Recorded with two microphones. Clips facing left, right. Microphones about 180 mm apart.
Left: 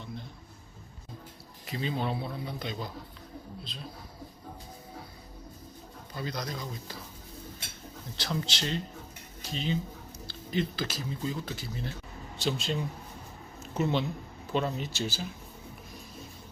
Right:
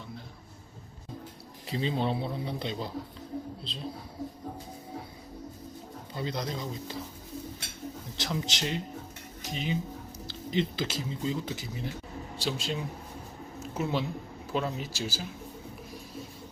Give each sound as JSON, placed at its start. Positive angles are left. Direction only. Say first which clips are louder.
{"t": 1.6, "sound": "speech", "louder": "right 3 dB", "side_deg": -30}
{"t": 6.1, "sound": "speech", "louder": "right 2 dB", "side_deg": -25}
{"t": 8.1, "sound": "speech", "louder": "left 1 dB", "side_deg": -20}
{"t": 13.6, "sound": "a sound", "louder": "left 2 dB", "side_deg": -10}
{"t": 14.5, "sound": "speech", "louder": "left 1 dB", "side_deg": -5}